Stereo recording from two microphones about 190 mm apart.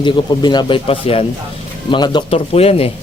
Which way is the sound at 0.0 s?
25° left (ahead or behind).